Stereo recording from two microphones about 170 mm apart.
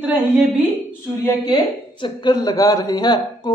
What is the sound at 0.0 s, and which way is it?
Speech, 10° right (ahead or behind).